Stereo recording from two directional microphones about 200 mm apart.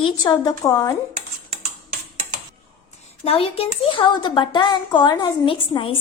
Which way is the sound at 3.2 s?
30° left (ahead or behind).